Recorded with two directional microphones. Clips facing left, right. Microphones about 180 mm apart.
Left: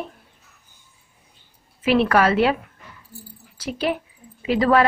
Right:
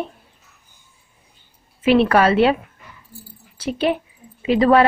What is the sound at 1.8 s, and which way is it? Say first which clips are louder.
Speech: right 3 dB; 25° right (ahead or behind).